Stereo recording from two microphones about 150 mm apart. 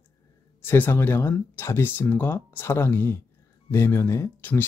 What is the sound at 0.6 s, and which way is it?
Speech, 15° left (ahead or behind).